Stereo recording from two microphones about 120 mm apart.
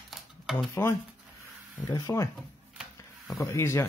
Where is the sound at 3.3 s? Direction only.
25° left (ahead or behind).